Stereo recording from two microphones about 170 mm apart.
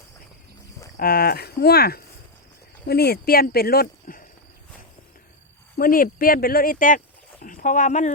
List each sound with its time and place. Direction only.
0.9 s speech: 65° left (ahead or behind)
5.7 s speech: 55° left (ahead or behind)